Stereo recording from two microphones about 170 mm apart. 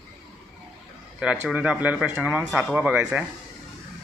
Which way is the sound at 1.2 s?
10° right (ahead or behind).